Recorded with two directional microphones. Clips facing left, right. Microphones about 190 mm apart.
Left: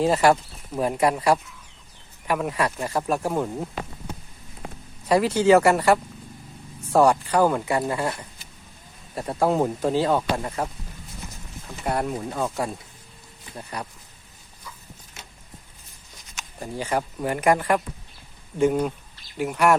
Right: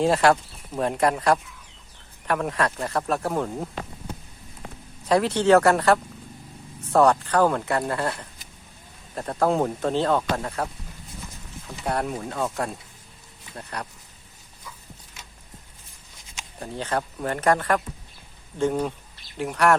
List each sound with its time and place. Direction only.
0.0 s speech: 5° left (ahead or behind)
5.0 s speech: 5° left (ahead or behind)
11.9 s speech: centre (ahead or behind)
16.6 s speech: 5° left (ahead or behind)